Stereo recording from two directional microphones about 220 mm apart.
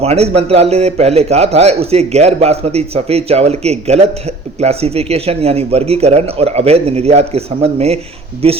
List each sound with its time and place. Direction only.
0.0 s a man's voice: 30° right (ahead or behind)